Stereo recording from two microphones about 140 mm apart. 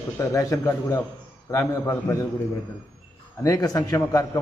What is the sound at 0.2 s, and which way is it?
A man's voice, 25° left (ahead or behind).